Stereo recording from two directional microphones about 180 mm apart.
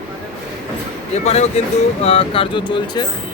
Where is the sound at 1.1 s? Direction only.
40° left (ahead or behind).